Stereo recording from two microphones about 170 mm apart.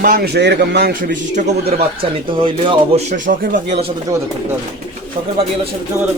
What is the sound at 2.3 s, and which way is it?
Speech, 30° right (ahead or behind).